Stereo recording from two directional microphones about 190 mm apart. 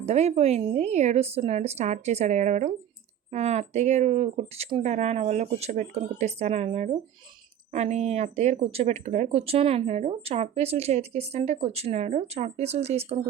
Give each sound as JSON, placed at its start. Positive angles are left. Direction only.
{"t": 0.0, "sound": "speech", "side_deg": -35}